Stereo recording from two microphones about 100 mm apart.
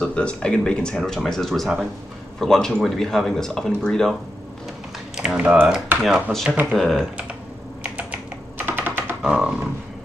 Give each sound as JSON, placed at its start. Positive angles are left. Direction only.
{"t": 0.0, "sound": "speech", "side_deg": 10}
{"t": 5.1, "sound": "speech", "side_deg": -10}
{"t": 6.7, "sound": "speech", "side_deg": 5}
{"t": 7.8, "sound": "computer keyboard", "side_deg": -15}
{"t": 9.2, "sound": "a sound", "side_deg": -10}